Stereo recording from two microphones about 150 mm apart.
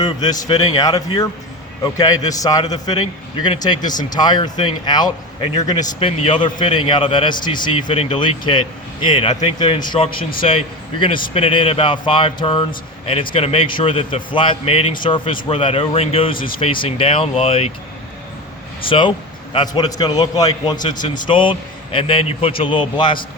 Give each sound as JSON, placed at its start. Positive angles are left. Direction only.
{"t": 0.0, "sound": "a man's voice", "side_deg": 25}
{"t": 6.0, "sound": "a man's voice", "side_deg": 40}
{"t": 18.9, "sound": "a man's voice", "side_deg": 35}